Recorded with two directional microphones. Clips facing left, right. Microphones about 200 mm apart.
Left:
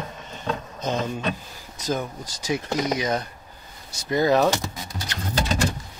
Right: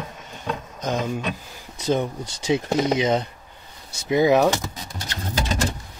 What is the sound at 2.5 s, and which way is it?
Speech, 25° right (ahead or behind).